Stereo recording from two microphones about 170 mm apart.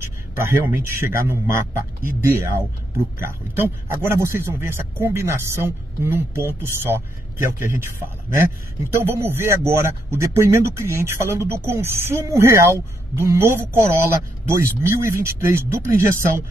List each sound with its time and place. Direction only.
0.0 s a man's voice: 15° right (ahead or behind)
8.9 s a man's voice: 15° right (ahead or behind)